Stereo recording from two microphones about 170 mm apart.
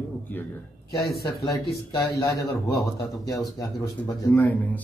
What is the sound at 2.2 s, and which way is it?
Speech, 20° left (ahead or behind).